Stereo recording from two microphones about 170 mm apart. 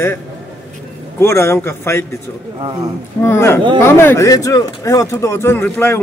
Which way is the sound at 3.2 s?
15° left (ahead or behind).